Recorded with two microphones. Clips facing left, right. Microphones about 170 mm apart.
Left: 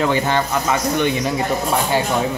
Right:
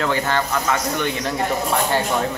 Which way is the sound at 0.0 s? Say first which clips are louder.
Left 3 dB; 15° left (ahead or behind).